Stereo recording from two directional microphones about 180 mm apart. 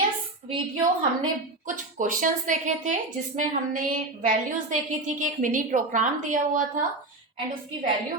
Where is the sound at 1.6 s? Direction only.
45° right (ahead or behind).